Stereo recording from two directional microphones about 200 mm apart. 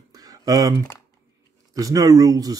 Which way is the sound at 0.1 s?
20° right (ahead or behind).